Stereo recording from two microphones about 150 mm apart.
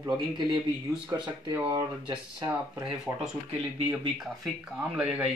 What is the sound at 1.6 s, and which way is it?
Speech, 35° right (ahead or behind).